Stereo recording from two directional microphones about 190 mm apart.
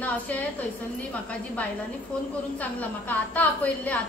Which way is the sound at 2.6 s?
10° left (ahead or behind).